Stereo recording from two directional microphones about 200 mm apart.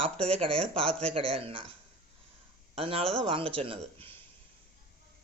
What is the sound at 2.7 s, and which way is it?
Speech, 30° right (ahead or behind).